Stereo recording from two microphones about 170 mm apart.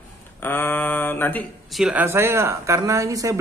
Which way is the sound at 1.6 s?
5° right (ahead or behind).